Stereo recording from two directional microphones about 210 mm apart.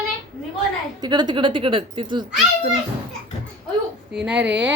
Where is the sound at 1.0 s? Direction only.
20° right (ahead or behind).